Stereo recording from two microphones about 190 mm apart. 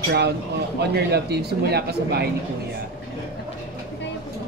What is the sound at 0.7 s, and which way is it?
Speech, 60° right (ahead or behind).